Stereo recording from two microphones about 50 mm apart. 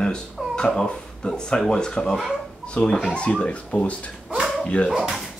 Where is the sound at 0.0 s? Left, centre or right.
Centre.